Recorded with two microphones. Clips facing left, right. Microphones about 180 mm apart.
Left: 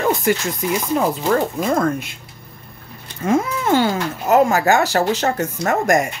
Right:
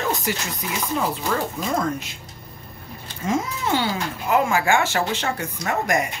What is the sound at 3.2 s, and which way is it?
A woman's voice, 55° left (ahead or behind).